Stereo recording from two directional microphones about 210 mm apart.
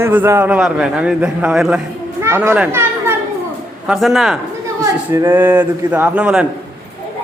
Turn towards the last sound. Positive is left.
turn(degrees=-5)  # may be behind; listen again after turning